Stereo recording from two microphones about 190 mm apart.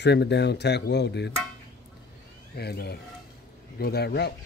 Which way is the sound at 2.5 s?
55° left (ahead or behind).